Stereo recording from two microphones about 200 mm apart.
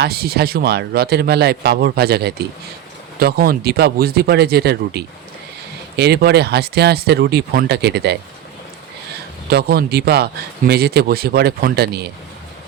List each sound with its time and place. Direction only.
0.0 s speech: 50° right (ahead or behind)
9.5 s speech: 50° right (ahead or behind)